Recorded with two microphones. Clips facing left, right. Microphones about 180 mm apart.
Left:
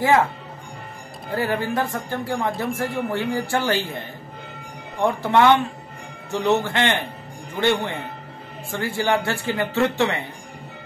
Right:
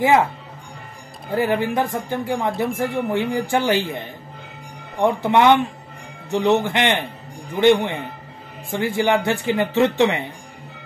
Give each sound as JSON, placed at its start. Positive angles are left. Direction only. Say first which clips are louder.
{"t": 1.3, "sound": "speech", "louder": "right 3 dB", "side_deg": -15}